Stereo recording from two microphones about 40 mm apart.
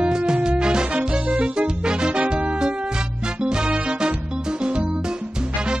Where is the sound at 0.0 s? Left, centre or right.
Right.